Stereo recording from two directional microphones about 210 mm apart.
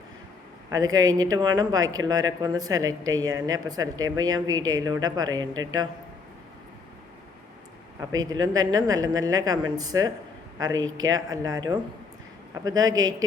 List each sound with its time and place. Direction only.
0.7 s speech: 15° right (ahead or behind)
8.1 s speech: 20° right (ahead or behind)